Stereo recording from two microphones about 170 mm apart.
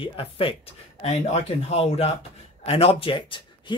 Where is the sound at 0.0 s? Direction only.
30° left (ahead or behind).